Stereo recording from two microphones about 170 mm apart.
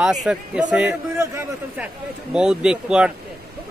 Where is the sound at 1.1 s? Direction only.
15° right (ahead or behind).